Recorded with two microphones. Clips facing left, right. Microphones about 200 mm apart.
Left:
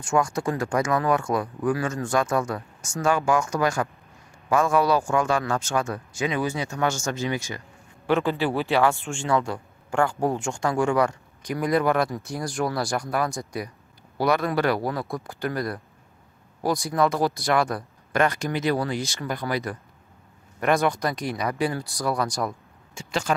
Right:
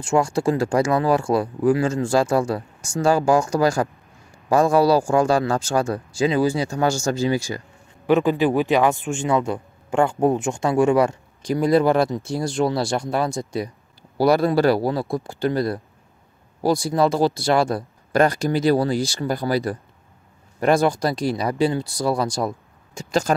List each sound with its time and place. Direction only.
0.0 s speech: 30° right (ahead or behind)
8.1 s speech: 15° right (ahead or behind)
22.9 s speech: 40° right (ahead or behind)